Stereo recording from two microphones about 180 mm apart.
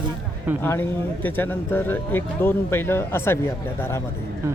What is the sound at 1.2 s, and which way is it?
Speech, 10° left (ahead or behind).